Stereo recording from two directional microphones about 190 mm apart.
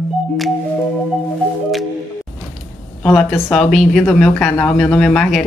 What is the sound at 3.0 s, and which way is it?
A woman's voice, centre (ahead or behind).